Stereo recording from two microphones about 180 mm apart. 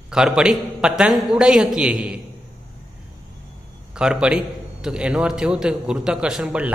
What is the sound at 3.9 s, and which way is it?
A man's voice, 5° right (ahead or behind).